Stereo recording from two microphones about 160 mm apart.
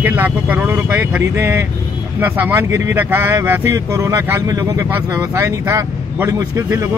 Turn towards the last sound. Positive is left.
turn(degrees=-20)  # may be behind; listen again after turning